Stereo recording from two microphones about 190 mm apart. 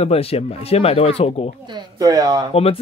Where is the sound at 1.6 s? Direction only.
20° right (ahead or behind).